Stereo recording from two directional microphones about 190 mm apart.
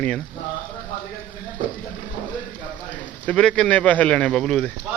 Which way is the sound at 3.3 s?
5° left (ahead or behind).